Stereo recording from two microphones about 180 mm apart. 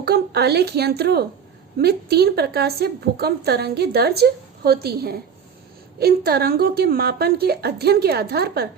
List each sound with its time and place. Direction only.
0.0 s a woman's voice: 65° right (ahead or behind)